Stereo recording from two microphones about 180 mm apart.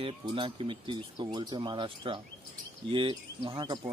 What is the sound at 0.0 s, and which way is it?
Speech, 30° right (ahead or behind).